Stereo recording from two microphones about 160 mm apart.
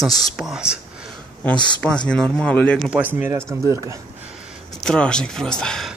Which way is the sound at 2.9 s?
10° right (ahead or behind).